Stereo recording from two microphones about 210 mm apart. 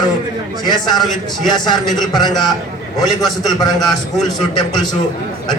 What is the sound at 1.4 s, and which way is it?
A man's voice, 20° left (ahead or behind).